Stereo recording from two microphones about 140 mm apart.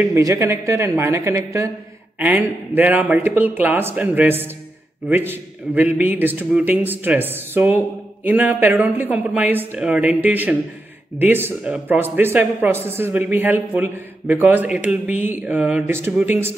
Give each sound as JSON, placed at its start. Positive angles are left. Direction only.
{"t": 0.0, "sound": "a man's voice", "side_deg": -20}